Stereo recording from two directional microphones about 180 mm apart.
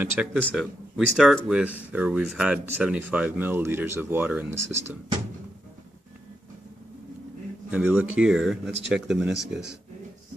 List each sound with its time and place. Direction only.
0.0 s speech: 10° right (ahead or behind)
0.3 s speech: 5° left (ahead or behind)
7.7 s speech: 10° right (ahead or behind)